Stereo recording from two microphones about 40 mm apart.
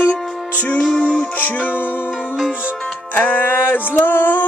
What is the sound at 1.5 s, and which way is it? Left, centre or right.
Music, left.